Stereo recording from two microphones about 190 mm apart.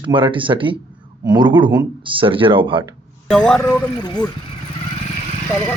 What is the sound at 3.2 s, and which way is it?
Speech, 5° left (ahead or behind).